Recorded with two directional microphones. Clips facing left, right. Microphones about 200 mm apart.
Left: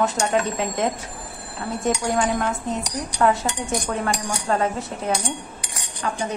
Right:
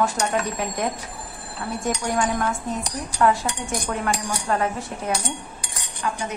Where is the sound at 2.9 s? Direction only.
25° left (ahead or behind).